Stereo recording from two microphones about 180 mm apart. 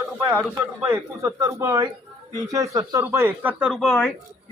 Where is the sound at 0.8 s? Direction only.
15° right (ahead or behind); by 4.2 s centre (ahead or behind).